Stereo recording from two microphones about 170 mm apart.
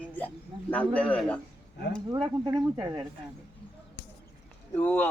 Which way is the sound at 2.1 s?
25° right (ahead or behind).